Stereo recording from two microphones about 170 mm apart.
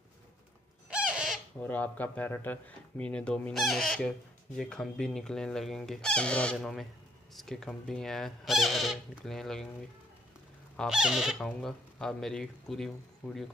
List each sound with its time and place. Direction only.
0.8 s squawk: 5° right (ahead or behind)
1.6 s speech: 10° left (ahead or behind)
10.8 s speech: 5° right (ahead or behind)